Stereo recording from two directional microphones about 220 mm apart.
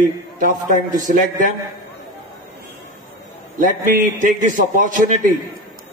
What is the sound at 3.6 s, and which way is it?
A man's voice, 35° right (ahead or behind).